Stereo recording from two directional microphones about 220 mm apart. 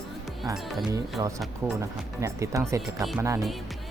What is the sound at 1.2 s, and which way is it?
Speech, 15° right (ahead or behind).